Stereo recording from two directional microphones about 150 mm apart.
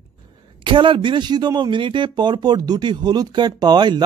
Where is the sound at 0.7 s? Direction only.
35° right (ahead or behind).